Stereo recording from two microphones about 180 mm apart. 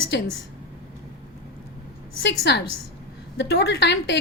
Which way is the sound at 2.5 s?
70° left (ahead or behind).